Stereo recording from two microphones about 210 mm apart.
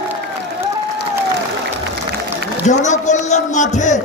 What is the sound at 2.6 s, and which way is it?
Speech, 35° left (ahead or behind).